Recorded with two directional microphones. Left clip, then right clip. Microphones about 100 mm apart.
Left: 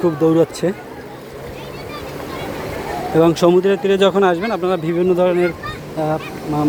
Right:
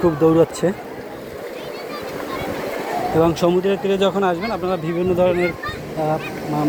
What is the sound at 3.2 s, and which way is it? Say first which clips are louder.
Speech: left 5 dB; 90° left.